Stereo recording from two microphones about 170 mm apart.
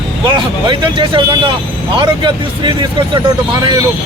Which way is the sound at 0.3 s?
25° right (ahead or behind).